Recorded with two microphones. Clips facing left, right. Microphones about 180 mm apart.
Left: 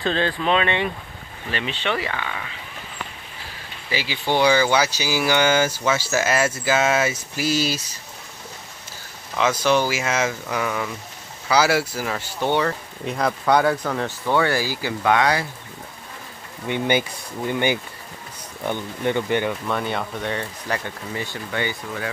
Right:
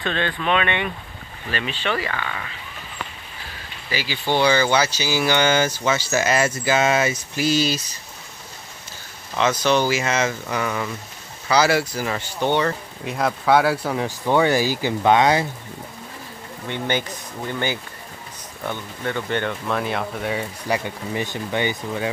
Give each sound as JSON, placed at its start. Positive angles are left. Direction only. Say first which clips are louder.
{"t": 0.0, "sound": "speech", "louder": "left 2 dB", "side_deg": 30}
{"t": 3.9, "sound": "speech", "louder": "even", "side_deg": 20}
{"t": 9.4, "sound": "speech", "louder": "even", "side_deg": 5}
{"t": 16.6, "sound": "speech", "louder": "left 3 dB", "side_deg": 10}
{"t": 19.7, "sound": "speech", "louder": "right 1 dB", "side_deg": 0}